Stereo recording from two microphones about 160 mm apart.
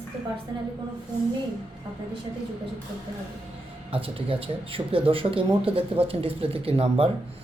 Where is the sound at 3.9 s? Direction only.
35° right (ahead or behind).